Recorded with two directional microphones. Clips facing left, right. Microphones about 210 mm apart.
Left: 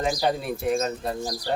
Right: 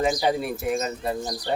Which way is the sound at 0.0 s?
5° right (ahead or behind).